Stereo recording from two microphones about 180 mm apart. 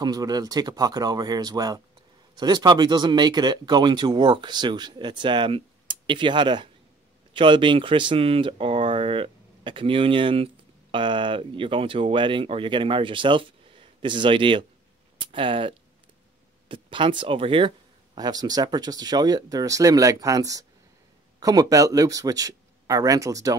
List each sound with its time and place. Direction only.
0.0 s speech: 20° right (ahead or behind)